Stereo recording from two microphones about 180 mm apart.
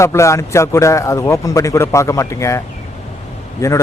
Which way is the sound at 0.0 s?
15° left (ahead or behind).